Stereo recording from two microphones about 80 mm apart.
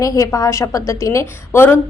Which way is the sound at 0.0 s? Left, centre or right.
Left.